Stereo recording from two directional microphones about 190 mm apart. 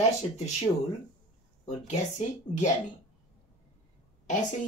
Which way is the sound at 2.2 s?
40° left (ahead or behind).